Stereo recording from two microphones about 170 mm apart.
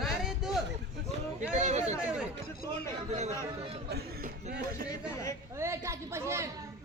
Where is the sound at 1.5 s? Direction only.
45° right (ahead or behind).